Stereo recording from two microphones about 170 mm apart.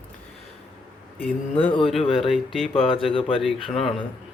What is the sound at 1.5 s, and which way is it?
Mantra, 35° left (ahead or behind).